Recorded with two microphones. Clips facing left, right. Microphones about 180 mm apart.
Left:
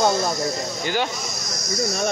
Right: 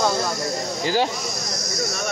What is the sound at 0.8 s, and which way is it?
Speech, 35° right (ahead or behind).